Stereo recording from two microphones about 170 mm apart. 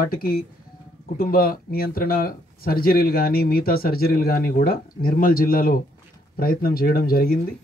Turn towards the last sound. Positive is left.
turn(degrees=60)  # may be behind; listen again after turning